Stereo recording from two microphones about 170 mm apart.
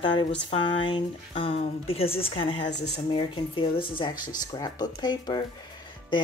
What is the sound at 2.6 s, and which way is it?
Speech, 85° left.